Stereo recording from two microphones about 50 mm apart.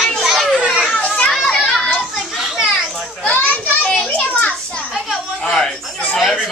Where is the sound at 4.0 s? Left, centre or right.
Left.